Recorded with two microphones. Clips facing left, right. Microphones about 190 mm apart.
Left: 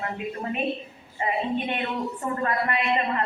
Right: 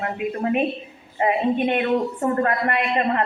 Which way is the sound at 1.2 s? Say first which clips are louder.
Right 7 dB; 55° right (ahead or behind).